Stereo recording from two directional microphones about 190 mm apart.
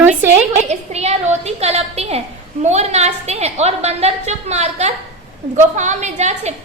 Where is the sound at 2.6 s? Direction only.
35° right (ahead or behind).